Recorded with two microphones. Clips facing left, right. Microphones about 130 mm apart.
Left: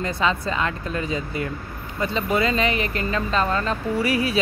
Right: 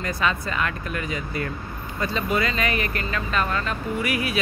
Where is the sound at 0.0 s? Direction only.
25° left (ahead or behind).